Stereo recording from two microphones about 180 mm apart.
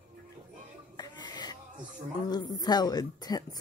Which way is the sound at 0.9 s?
25° left (ahead or behind).